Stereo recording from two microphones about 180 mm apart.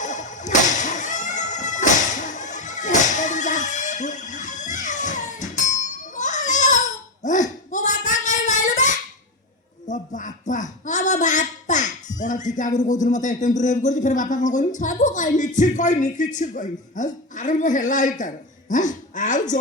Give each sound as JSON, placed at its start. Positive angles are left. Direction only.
{"t": 0.0, "sound": "music", "side_deg": 45}
{"t": 7.2, "sound": "a sound", "side_deg": 45}
{"t": 18.7, "sound": "speech", "side_deg": 45}